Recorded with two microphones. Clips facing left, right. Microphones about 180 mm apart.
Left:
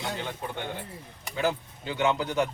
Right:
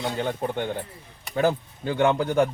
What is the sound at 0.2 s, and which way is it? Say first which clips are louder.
Speech: right 8 dB; 50° right (ahead or behind).